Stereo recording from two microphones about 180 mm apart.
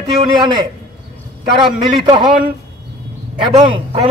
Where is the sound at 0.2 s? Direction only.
25° right (ahead or behind).